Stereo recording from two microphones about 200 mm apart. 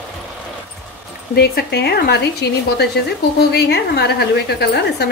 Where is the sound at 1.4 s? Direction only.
55° left (ahead or behind).